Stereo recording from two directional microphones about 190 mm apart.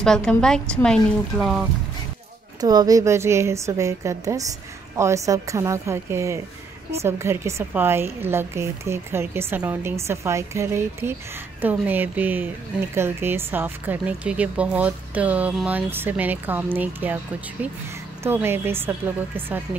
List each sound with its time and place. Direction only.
0.0 s speech: 5° left (ahead or behind)
2.6 s speech: 20° right (ahead or behind)